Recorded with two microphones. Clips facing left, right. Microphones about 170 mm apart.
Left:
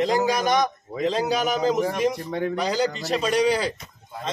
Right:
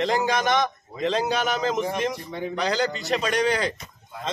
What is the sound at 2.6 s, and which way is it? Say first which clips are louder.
Speech: right 1 dB; 10° left (ahead or behind).